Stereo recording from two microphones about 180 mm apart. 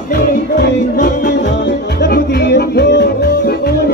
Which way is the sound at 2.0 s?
65° left (ahead or behind).